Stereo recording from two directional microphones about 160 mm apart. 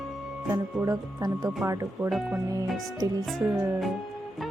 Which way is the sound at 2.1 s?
Centre (ahead or behind).